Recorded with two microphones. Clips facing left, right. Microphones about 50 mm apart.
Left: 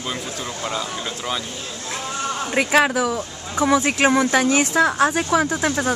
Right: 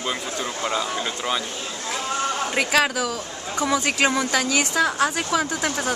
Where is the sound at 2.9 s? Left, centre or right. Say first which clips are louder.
Left 4 dB; left.